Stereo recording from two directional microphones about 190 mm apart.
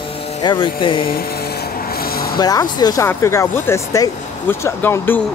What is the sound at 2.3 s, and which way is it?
Speech, 20° left (ahead or behind).